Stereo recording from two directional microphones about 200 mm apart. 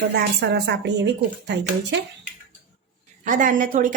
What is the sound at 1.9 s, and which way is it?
Speech, 60° right (ahead or behind).